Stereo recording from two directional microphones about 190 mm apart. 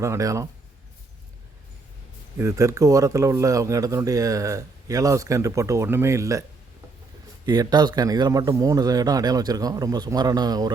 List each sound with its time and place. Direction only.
0.0 s speech: 15° right (ahead or behind)
2.4 s speech: 15° right (ahead or behind)
7.4 s speech: 20° right (ahead or behind)